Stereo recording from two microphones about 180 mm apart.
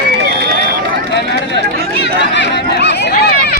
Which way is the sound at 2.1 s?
75° left (ahead or behind).